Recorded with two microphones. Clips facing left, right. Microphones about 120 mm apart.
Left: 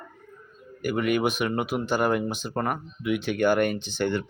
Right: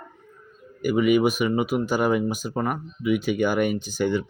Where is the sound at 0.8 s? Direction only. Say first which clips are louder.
Right 5 dB; 5° right (ahead or behind).